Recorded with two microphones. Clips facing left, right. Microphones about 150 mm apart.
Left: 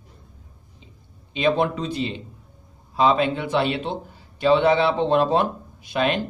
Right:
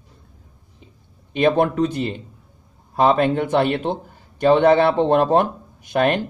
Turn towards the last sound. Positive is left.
turn(degrees=-50)  # may be behind; listen again after turning